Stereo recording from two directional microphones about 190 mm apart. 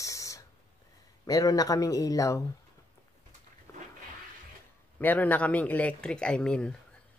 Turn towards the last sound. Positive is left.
turn(degrees=5)  # may be behind; listen again after turning